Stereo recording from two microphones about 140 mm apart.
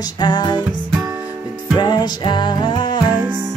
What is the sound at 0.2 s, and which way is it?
Music, 30° left (ahead or behind).